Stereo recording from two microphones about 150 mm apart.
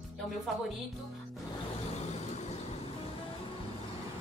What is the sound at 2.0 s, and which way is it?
Vehicle, 50° left (ahead or behind).